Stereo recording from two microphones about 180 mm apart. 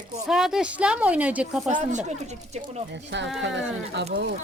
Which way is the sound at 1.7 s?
40° right (ahead or behind).